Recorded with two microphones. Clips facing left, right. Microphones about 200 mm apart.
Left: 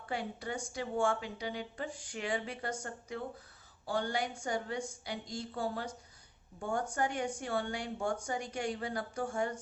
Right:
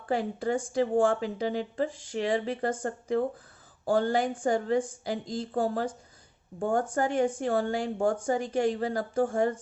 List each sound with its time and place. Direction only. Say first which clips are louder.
0.0 s speech: right 10 dB; 45° right (ahead or behind)